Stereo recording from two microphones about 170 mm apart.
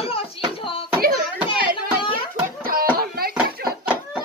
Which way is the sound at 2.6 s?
60° right (ahead or behind).